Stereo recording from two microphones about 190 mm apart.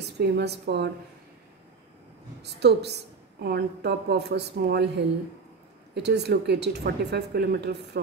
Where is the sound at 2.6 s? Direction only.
60° right (ahead or behind).